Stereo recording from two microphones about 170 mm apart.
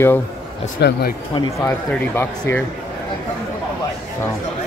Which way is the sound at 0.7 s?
75° left (ahead or behind).